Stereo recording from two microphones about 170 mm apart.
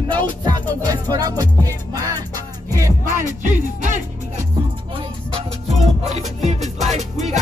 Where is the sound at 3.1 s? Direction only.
50° right (ahead or behind).